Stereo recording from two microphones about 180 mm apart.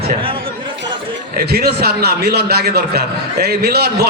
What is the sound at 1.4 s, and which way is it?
A man's voice, 60° right (ahead or behind).